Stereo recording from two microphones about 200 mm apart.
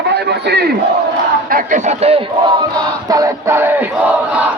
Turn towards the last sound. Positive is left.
turn(degrees=-10)  # may be behind; listen again after turning